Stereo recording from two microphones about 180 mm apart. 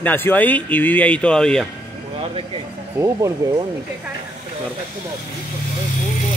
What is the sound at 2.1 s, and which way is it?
Speech, 30° right (ahead or behind).